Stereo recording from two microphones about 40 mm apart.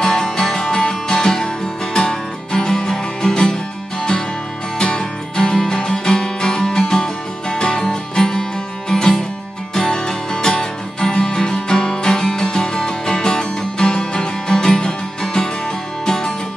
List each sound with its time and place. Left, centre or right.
0.0 s music: centre
4.7 s music: centre